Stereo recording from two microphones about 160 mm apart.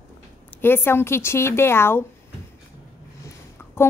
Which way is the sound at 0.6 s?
15° left (ahead or behind).